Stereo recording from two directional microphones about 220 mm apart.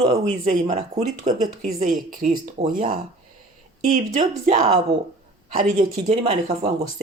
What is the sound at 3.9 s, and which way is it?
Speech, 35° right (ahead or behind).